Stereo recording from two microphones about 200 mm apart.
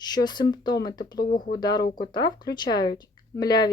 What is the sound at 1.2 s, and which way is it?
Speech, 45° left (ahead or behind).